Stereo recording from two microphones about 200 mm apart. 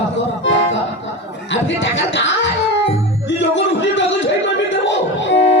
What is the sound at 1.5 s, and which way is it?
Speech, 65° left (ahead or behind).